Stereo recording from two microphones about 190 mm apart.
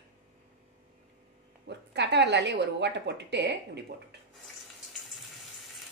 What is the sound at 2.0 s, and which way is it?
A woman's voice, 65° right (ahead or behind).